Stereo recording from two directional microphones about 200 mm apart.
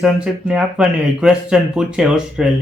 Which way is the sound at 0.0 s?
5° right (ahead or behind).